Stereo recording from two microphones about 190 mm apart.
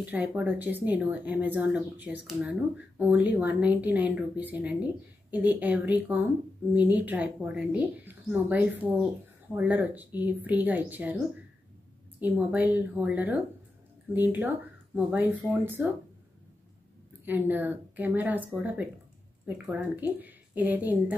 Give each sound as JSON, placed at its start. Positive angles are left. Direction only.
{"t": 0.0, "sound": "speech", "side_deg": -10}
{"t": 12.2, "sound": "speech", "side_deg": -10}
{"t": 17.2, "sound": "a woman's voice", "side_deg": -10}